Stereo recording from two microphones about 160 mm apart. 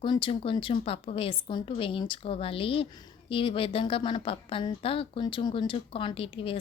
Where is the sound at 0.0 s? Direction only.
30° left (ahead or behind).